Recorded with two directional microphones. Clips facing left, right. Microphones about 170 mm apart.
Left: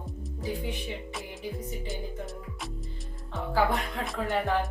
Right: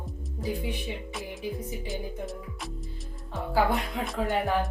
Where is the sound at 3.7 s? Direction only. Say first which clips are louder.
Right 2 dB; centre (ahead or behind).